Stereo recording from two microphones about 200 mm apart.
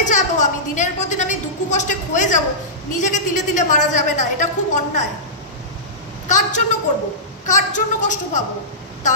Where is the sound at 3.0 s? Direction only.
40° left (ahead or behind).